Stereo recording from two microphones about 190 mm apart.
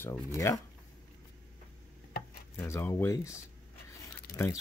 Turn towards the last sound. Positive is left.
turn(degrees=50)  # may be behind; listen again after turning